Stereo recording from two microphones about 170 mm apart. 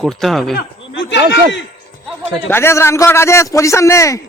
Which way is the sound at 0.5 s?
90° left.